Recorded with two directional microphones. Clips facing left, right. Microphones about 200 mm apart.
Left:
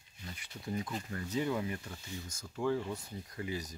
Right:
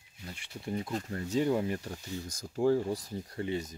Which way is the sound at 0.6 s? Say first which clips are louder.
Right 3 dB; 30° right (ahead or behind).